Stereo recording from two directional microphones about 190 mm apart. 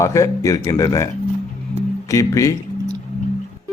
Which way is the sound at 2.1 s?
15° left (ahead or behind).